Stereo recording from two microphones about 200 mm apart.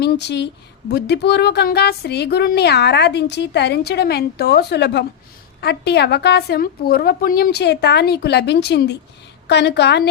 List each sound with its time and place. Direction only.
0.0 s speech: 55° left (ahead or behind)